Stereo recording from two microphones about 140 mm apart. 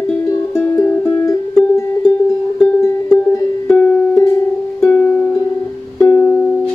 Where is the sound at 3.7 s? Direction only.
15° left (ahead or behind).